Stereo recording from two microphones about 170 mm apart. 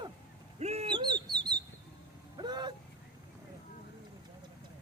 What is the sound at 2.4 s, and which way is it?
Vehicle, 25° right (ahead or behind).